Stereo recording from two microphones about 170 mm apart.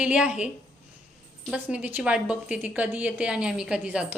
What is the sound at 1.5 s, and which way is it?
A woman's voice, 10° right (ahead or behind).